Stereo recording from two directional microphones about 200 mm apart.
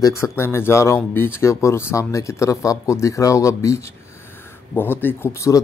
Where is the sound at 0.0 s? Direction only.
15° left (ahead or behind).